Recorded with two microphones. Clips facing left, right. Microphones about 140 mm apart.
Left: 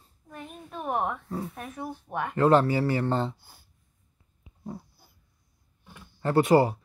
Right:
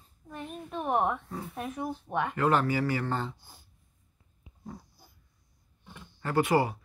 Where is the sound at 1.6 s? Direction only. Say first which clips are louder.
Right 2 dB; 15° right (ahead or behind).